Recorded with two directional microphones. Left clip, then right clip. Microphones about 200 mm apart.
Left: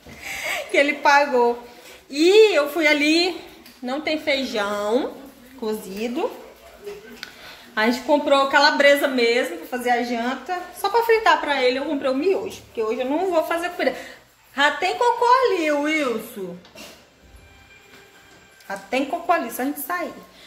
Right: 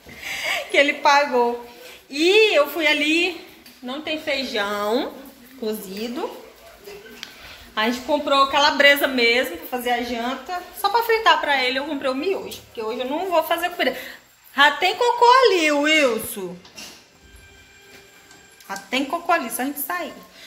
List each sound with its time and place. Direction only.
0.2 s a sound: centre (ahead or behind)
2.0 s a woman's voice: 10° left (ahead or behind)
4.6 s a woman's voice: centre (ahead or behind)
5.6 s speech: 10° left (ahead or behind)
7.2 s a sound: 15° left (ahead or behind)
7.7 s speech: 15° left (ahead or behind); by 15.0 s 5° right (ahead or behind)
15.1 s a woman's voice: 30° right (ahead or behind)
18.7 s a woman's voice: 5° left (ahead or behind)